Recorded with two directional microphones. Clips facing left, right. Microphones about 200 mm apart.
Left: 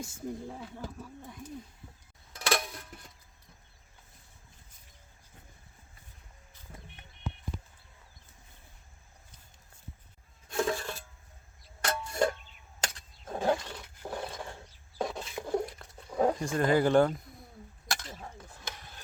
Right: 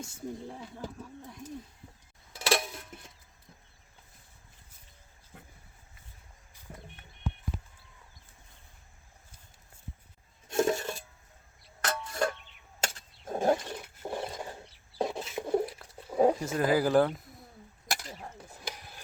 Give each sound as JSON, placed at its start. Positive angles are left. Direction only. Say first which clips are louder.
{"t": 0.1, "sound": "speech", "louder": "left 1 dB", "side_deg": -5}
{"t": 2.3, "sound": "music", "louder": "right 2 dB", "side_deg": -5}
{"t": 10.5, "sound": "music", "louder": "right 3 dB", "side_deg": -25}
{"t": 11.9, "sound": "music", "louder": "left 2 dB", "side_deg": 20}
{"t": 12.8, "sound": "a sound", "louder": "right 3 dB", "side_deg": -25}
{"t": 13.5, "sound": "dog", "louder": "right 1 dB", "side_deg": -20}
{"t": 14.5, "sound": "a sound", "louder": "right 2 dB", "side_deg": -30}
{"t": 15.5, "sound": "a sound", "louder": "right 3 dB", "side_deg": -5}
{"t": 17.9, "sound": "dishes", "louder": "right 1 dB", "side_deg": -10}